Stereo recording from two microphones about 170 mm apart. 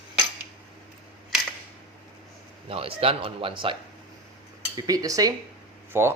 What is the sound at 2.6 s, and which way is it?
Speech, 35° right (ahead or behind).